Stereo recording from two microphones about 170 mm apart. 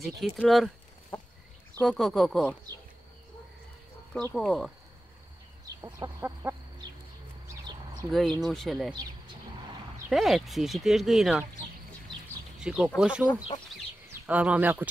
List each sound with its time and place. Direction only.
0.0 s speech: centre (ahead or behind)
1.1 s chicken: 5° left (ahead or behind)
1.8 s speech: 5° left (ahead or behind)
4.3 s speech: centre (ahead or behind)
5.8 s speech: 20° right (ahead or behind)
7.4 s a sound: 15° right (ahead or behind)
8.1 s speech: centre (ahead or behind)
10.0 s speech: centre (ahead or behind)
12.5 s speech: 5° right (ahead or behind)